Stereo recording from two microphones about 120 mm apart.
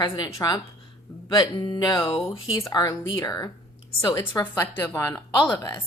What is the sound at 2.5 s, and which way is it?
A woman's voice, 30° left (ahead or behind).